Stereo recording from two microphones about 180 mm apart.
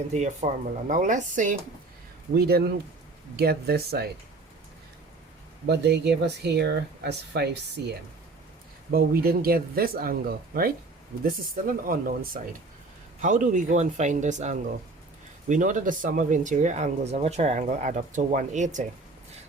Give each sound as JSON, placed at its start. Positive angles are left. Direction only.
{"t": 0.1, "sound": "speech", "side_deg": -40}
{"t": 2.3, "sound": "speech", "side_deg": -60}
{"t": 5.6, "sound": "speech", "side_deg": -65}